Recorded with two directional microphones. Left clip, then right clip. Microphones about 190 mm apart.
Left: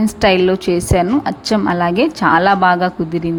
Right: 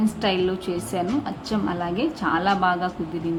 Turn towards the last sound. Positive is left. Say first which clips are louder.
# left 9 dB
turn(degrees=40)  # may be behind; listen again after turning